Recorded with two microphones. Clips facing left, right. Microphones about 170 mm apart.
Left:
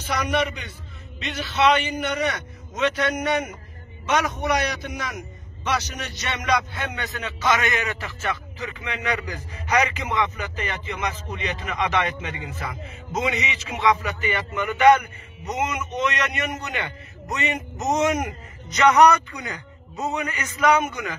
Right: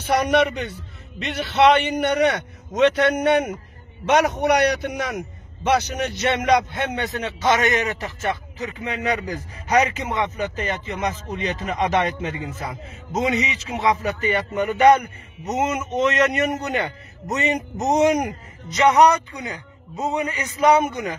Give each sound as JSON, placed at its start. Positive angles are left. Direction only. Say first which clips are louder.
{"t": 0.0, "sound": "a man's voice", "louder": "right 6 dB", "side_deg": -65}
{"t": 6.9, "sound": "a man's voice", "louder": "right 6 dB", "side_deg": -40}
{"t": 7.7, "sound": "a man's voice", "louder": "right 4 dB", "side_deg": -20}
{"t": 8.5, "sound": "a man's voice", "louder": "right 4 dB", "side_deg": -40}
{"t": 18.8, "sound": "a man's voice", "louder": "right 1 dB", "side_deg": -25}